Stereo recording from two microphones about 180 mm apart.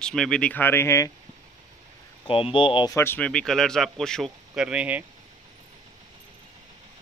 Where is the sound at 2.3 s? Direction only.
30° left (ahead or behind).